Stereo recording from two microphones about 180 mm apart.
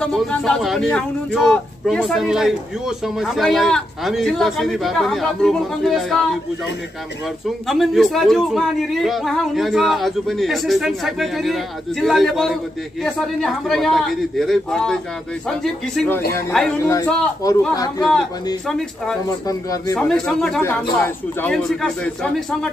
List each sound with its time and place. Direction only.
0.0 s a man's voice: 5° left (ahead or behind)
7.4 s a man's voice: centre (ahead or behind)
16.8 s a man's voice: 20° left (ahead or behind)
19.4 s speech: 20° left (ahead or behind)
20.0 s a man's voice: 5° left (ahead or behind)